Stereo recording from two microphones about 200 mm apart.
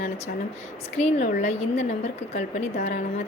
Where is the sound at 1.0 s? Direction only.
35° left (ahead or behind).